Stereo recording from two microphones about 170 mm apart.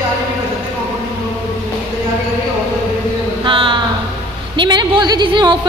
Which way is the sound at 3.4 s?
30° right (ahead or behind).